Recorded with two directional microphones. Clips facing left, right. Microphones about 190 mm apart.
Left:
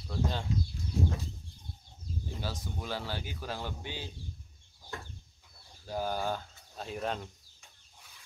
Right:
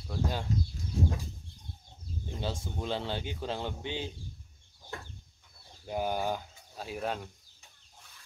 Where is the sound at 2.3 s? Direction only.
25° right (ahead or behind).